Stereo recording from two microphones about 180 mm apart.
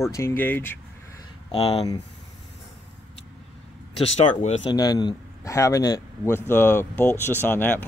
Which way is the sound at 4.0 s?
35° left (ahead or behind).